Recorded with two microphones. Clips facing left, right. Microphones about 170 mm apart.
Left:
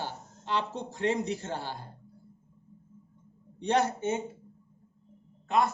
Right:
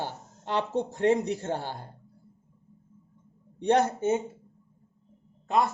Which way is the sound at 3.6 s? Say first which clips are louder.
Right 3 dB; 50° right (ahead or behind).